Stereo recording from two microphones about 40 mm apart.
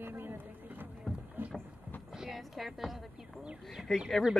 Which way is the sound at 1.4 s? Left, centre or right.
Right.